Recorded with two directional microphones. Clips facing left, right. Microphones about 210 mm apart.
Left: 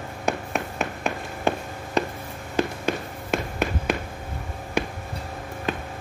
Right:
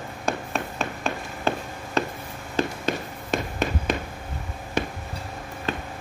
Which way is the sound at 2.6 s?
10° left (ahead or behind).